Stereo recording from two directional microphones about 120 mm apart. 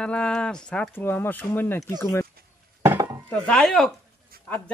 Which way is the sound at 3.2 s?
5° left (ahead or behind).